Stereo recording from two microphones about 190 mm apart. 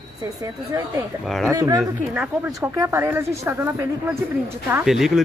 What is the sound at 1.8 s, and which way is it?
Speech, 10° right (ahead or behind).